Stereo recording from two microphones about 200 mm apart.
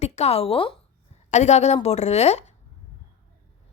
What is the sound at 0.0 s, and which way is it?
A woman's voice, 30° left (ahead or behind).